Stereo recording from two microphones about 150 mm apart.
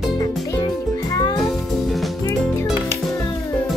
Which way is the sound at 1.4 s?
Centre (ahead or behind).